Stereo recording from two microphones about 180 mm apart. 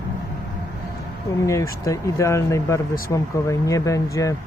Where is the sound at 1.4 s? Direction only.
15° left (ahead or behind).